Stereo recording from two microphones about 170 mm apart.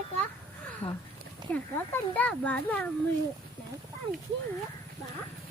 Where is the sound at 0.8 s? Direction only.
25° left (ahead or behind).